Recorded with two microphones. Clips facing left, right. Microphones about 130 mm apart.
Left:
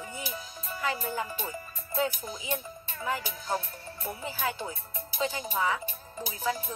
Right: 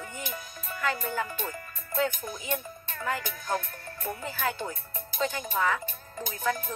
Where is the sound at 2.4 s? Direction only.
15° left (ahead or behind).